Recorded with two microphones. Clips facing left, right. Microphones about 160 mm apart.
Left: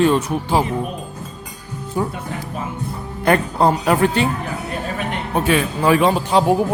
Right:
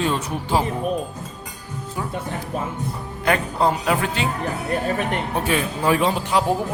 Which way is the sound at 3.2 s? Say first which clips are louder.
Left 4 dB; 50° left (ahead or behind).